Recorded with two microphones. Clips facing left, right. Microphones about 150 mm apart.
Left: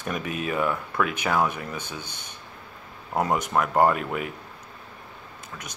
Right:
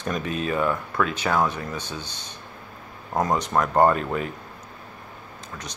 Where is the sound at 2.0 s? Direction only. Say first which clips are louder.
Right 2 dB; 55° left (ahead or behind).